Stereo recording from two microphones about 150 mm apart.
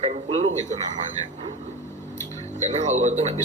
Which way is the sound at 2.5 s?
50° right (ahead or behind).